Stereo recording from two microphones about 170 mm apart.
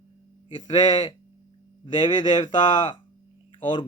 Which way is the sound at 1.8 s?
25° left (ahead or behind).